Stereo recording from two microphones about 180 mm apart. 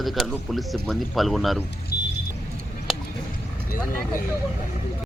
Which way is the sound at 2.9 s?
Centre (ahead or behind).